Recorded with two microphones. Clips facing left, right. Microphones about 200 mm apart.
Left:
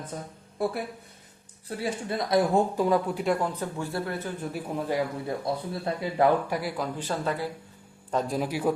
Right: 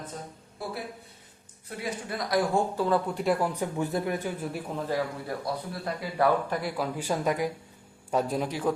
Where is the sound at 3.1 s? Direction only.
Centre (ahead or behind).